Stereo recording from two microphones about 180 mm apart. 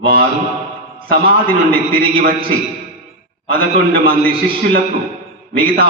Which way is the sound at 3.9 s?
55° right (ahead or behind).